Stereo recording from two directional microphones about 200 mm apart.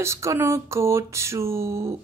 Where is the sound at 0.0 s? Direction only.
15° right (ahead or behind).